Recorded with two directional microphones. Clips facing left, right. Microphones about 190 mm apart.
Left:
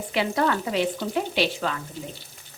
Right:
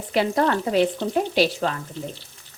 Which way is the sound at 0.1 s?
40° right (ahead or behind).